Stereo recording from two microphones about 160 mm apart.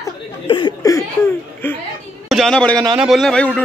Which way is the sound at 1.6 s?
15° left (ahead or behind).